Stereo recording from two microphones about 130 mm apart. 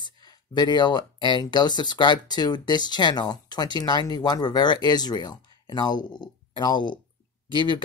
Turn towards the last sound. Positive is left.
turn(degrees=35)  # may be behind; listen again after turning